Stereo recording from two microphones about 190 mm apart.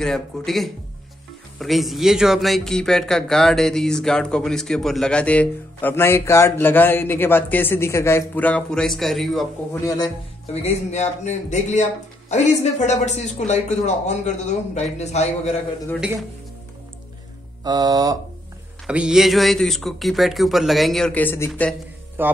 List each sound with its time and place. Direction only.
0.0 s speech: centre (ahead or behind)
9.8 s speech: 20° left (ahead or behind)
10.5 s a man's voice: 35° left (ahead or behind)
17.6 s speech: 20° right (ahead or behind)
18.9 s speech: 5° right (ahead or behind)
22.2 s a man's voice: 10° right (ahead or behind)